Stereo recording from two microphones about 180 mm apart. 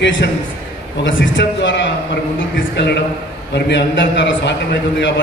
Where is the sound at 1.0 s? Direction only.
90° left.